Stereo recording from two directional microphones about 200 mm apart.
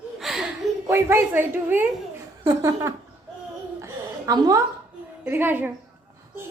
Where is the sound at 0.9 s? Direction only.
10° right (ahead or behind).